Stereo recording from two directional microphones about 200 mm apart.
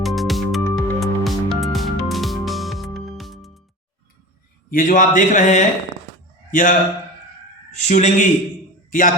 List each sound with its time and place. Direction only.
0.0 s music: centre (ahead or behind)
4.7 s a man's voice: 40° left (ahead or behind)
7.9 s a man's voice: 35° left (ahead or behind)